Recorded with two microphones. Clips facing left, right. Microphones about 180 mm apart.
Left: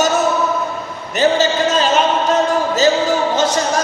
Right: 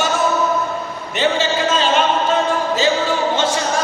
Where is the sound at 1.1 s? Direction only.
40° left (ahead or behind).